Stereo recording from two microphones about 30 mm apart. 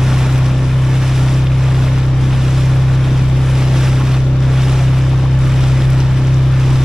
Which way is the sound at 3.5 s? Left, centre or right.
Centre.